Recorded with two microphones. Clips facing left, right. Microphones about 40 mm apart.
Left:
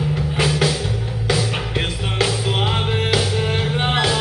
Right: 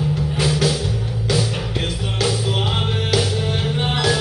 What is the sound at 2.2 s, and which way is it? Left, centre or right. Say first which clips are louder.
Music: left 1 dB; left.